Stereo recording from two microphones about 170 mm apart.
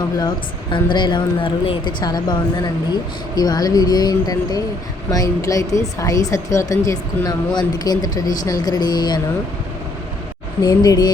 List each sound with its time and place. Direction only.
0.2 s speech: 25° left (ahead or behind)
10.6 s speech: 25° left (ahead or behind)